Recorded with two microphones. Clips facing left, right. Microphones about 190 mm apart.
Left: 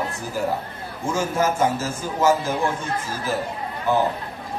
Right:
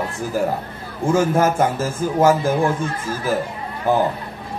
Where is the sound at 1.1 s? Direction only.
55° right (ahead or behind).